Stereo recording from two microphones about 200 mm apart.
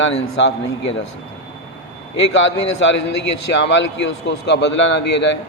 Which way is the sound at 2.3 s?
70° left (ahead or behind).